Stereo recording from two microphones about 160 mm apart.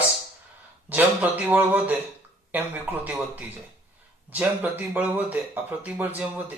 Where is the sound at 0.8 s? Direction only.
10° right (ahead or behind).